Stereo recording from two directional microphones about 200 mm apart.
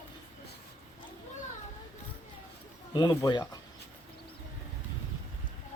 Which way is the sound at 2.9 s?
20° left (ahead or behind).